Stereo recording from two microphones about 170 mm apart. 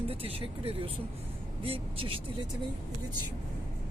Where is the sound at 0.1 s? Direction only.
35° right (ahead or behind).